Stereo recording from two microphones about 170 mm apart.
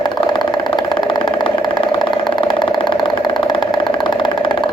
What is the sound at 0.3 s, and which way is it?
Vehicle, 25° left (ahead or behind).